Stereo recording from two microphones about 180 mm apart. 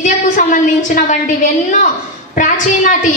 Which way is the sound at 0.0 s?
50° left (ahead or behind).